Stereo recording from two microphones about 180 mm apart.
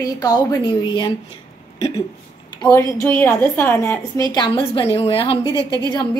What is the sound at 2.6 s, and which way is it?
A woman's voice, 15° left (ahead or behind).